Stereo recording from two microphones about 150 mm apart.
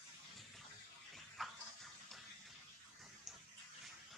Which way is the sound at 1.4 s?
Centre (ahead or behind).